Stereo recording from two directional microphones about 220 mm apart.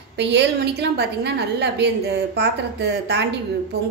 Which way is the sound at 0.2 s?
50° right (ahead or behind).